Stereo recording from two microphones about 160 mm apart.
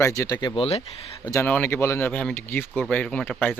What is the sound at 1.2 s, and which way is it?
Speech, 20° left (ahead or behind).